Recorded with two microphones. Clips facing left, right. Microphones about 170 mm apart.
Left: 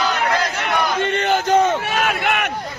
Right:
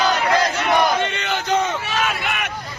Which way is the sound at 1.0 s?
50° left (ahead or behind).